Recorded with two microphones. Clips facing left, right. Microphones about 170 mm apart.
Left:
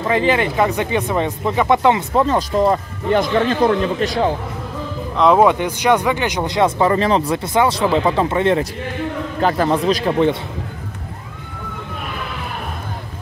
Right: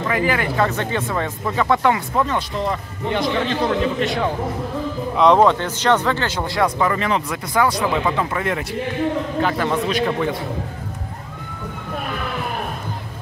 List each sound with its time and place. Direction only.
0.1 s speech: 25° left (ahead or behind)
5.1 s a man's voice: 5° left (ahead or behind); by 10.3 s 35° left (ahead or behind)